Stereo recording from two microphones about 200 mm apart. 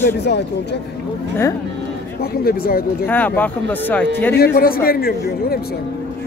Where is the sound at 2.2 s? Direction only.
50° left (ahead or behind).